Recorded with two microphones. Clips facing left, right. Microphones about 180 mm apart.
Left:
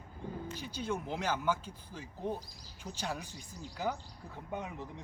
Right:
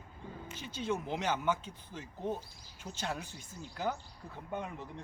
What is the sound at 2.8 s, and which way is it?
Speech, 10° right (ahead or behind).